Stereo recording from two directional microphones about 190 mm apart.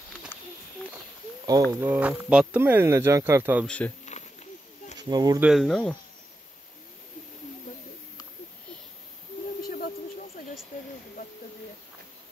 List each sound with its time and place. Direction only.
1.7 s speech: 10° right (ahead or behind)
3.6 s speech: 5° left (ahead or behind)
4.0 s a sound: 35° left (ahead or behind)
4.9 s speech: 20° right (ahead or behind)
5.4 s speech: centre (ahead or behind)